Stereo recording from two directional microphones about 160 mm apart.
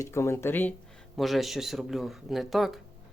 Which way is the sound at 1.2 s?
Centre (ahead or behind).